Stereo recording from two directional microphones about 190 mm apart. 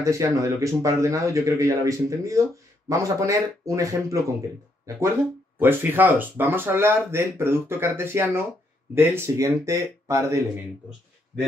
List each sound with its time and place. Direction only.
0.0 s speech: 15° right (ahead or behind)
5.6 s speech: 10° right (ahead or behind)